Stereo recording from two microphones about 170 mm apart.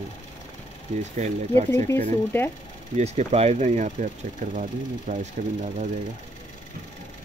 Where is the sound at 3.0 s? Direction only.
40° right (ahead or behind).